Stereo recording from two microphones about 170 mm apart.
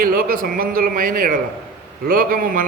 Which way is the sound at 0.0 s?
60° right (ahead or behind).